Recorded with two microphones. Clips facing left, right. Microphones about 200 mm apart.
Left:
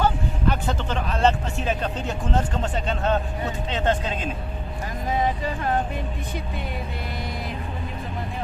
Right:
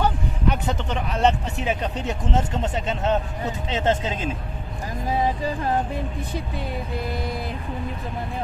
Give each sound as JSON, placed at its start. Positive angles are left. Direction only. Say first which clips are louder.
{"t": 0.0, "sound": "speech", "louder": "even", "side_deg": -15}